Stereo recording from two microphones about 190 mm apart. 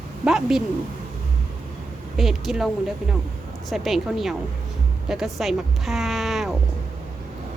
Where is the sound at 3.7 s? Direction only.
Centre (ahead or behind).